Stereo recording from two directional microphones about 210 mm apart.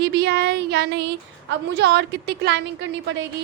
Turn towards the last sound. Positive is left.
turn(degrees=-55)  # may be behind; listen again after turning